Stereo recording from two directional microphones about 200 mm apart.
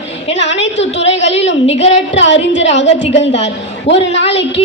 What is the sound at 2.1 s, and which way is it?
A woman's voice, 65° left (ahead or behind).